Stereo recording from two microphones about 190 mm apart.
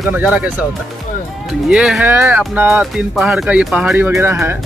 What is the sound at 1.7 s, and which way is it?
Speech, 5° right (ahead or behind).